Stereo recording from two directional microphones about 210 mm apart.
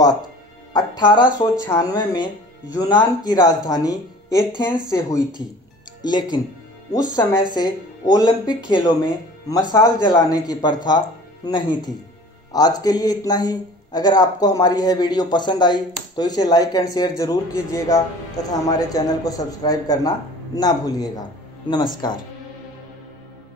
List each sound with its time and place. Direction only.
0.7 s a man's voice: 20° left (ahead or behind)